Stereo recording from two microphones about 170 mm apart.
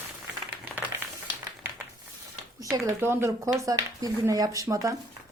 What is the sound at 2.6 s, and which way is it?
Speech, 15° right (ahead or behind).